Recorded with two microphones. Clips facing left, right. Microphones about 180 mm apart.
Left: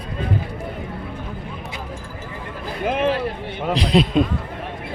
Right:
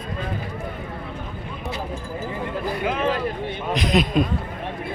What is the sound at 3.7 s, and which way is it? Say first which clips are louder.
Speech: left 3 dB; 30° left (ahead or behind).